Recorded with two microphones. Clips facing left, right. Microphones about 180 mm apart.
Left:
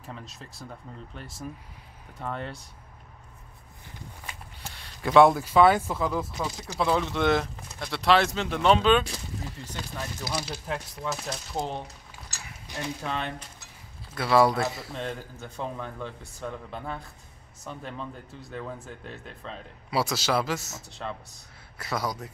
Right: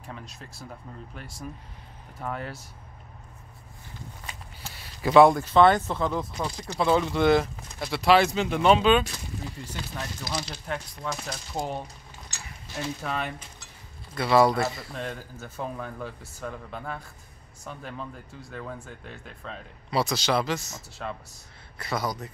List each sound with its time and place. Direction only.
0.0 s speech: centre (ahead or behind)
4.6 s speech: 5° right (ahead or behind)
10.3 s speech: 10° left (ahead or behind)
12.7 s speech: 15° left (ahead or behind)
13.0 s speech: 5° right (ahead or behind)